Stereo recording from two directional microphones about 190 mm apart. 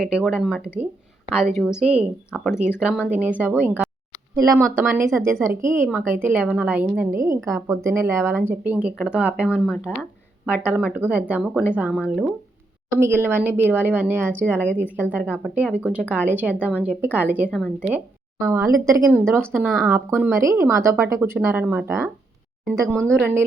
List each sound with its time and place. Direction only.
0.0 s speech: 5° right (ahead or behind)